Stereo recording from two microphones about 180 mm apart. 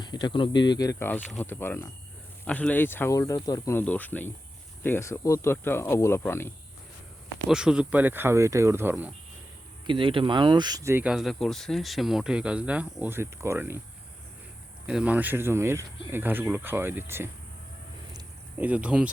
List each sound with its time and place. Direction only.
0.0 s speech: 25° left (ahead or behind)
7.5 s speech: 5° right (ahead or behind)
9.8 s speech: 30° right (ahead or behind)
14.8 s speech: 5° right (ahead or behind)
18.5 s speech: 10° right (ahead or behind)